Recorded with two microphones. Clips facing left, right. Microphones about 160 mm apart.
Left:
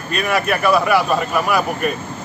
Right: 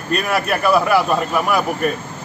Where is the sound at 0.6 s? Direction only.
Centre (ahead or behind).